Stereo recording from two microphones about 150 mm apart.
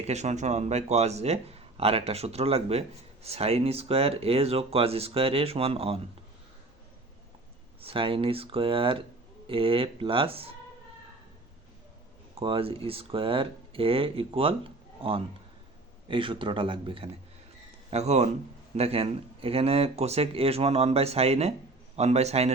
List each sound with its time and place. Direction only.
0.0 s speech: 50° right (ahead or behind)
7.8 s speech: 40° right (ahead or behind)
12.3 s speech: 35° right (ahead or behind)
17.9 s speech: 45° right (ahead or behind)